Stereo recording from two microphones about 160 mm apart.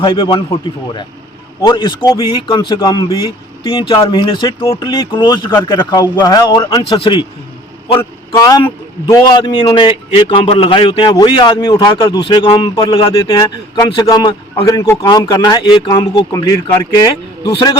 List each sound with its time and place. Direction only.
0.0 s speech: 30° left (ahead or behind)
8.4 s a man's voice: 20° left (ahead or behind)